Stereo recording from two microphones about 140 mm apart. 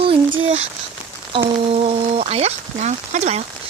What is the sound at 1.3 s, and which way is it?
Speech, 40° right (ahead or behind).